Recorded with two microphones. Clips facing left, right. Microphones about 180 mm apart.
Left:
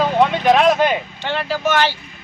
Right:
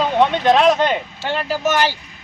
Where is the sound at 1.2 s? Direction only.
10° right (ahead or behind).